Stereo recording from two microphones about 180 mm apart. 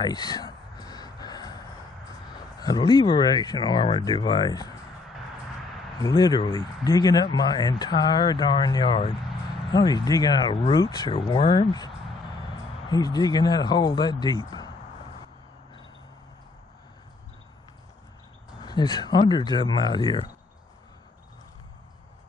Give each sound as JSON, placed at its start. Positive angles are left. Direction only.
{"t": 0.0, "sound": "a sound", "side_deg": 25}
{"t": 2.3, "sound": "speech", "side_deg": 20}
{"t": 6.0, "sound": "speech", "side_deg": 20}
{"t": 12.9, "sound": "speech", "side_deg": 20}
{"t": 18.6, "sound": "speech", "side_deg": 25}